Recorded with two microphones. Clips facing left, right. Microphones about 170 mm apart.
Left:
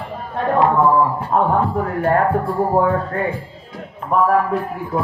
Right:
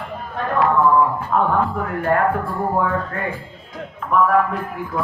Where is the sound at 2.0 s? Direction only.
35° left (ahead or behind).